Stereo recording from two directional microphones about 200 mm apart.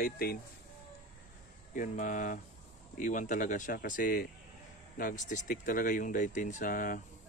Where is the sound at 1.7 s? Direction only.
40° left (ahead or behind).